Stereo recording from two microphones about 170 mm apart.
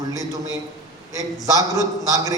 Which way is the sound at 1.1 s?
20° right (ahead or behind).